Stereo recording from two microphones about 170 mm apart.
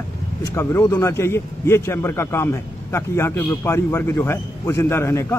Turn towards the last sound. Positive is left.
turn(degrees=15)  # may be behind; listen again after turning